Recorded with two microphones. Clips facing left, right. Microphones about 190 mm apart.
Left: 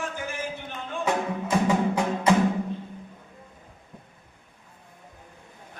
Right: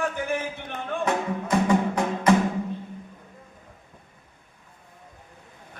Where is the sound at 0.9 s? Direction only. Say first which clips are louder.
Right 3 dB; 60° right (ahead or behind).